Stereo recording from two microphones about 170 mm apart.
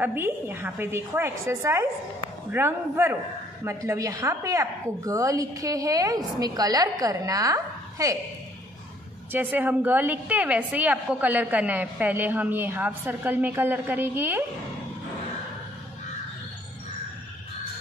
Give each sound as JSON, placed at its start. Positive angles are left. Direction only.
{"t": 0.0, "sound": "a woman's voice", "side_deg": -10}
{"t": 9.3, "sound": "a woman's voice", "side_deg": -10}